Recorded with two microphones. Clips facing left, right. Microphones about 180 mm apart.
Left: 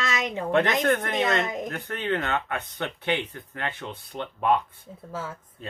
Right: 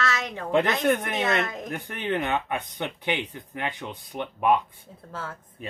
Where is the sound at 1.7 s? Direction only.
15° right (ahead or behind).